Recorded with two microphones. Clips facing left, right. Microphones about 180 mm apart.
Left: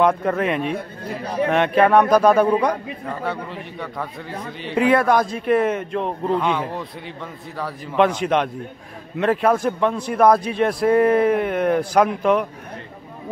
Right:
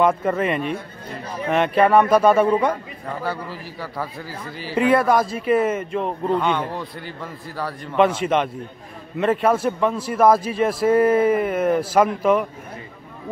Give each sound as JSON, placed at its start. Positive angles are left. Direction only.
{"t": 0.0, "sound": "a man's voice", "side_deg": 0}